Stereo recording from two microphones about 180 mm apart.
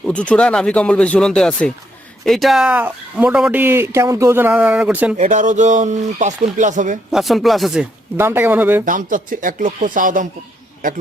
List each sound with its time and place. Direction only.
0.0 s speech: 5° left (ahead or behind)
5.1 s speech: 45° right (ahead or behind)
7.1 s speech: centre (ahead or behind)
8.1 s speech: 10° right (ahead or behind)
8.8 s speech: 50° right (ahead or behind)